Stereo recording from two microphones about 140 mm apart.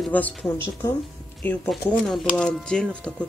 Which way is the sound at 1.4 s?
10° left (ahead or behind).